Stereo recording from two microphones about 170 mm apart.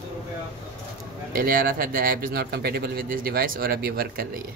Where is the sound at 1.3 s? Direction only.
55° right (ahead or behind).